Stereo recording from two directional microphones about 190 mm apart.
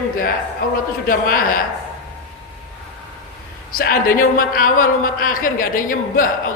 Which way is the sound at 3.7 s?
50° left (ahead or behind).